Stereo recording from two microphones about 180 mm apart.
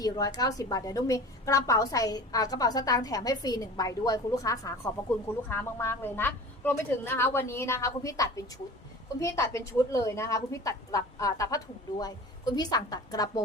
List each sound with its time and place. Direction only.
0.0 s a woman's voice: 20° left (ahead or behind)